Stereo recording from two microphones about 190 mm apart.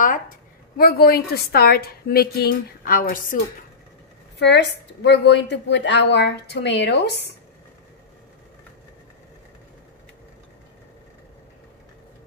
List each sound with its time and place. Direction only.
0.7 s a woman's voice: 55° left (ahead or behind)
4.4 s a woman's voice: 65° left (ahead or behind)